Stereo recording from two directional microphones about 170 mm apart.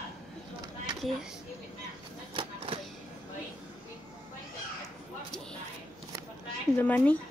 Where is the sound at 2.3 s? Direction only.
30° right (ahead or behind).